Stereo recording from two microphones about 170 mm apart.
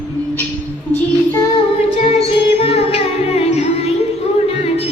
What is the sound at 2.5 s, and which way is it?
Music, 35° left (ahead or behind).